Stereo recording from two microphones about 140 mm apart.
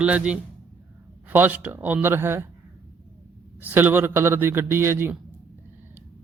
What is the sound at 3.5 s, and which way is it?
A man's voice, 15° right (ahead or behind).